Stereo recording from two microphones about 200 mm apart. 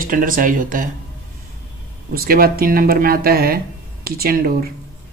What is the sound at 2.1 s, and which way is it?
Speech, 50° right (ahead or behind).